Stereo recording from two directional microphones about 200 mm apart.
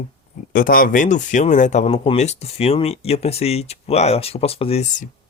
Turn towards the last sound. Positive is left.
turn(degrees=35)  # may be behind; listen again after turning